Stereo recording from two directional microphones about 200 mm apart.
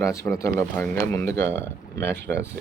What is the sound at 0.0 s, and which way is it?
Speech, 15° left (ahead or behind).